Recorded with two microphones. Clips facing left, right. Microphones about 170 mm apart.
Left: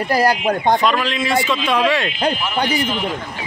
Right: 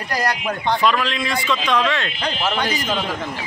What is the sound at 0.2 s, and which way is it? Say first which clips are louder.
Speech: left 5 dB; 30° left (ahead or behind).